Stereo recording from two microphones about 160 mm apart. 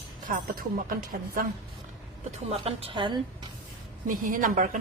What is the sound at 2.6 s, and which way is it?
Speech, 35° right (ahead or behind).